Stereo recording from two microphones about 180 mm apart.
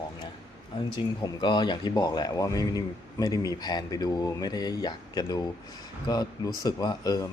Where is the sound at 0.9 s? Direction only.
25° left (ahead or behind).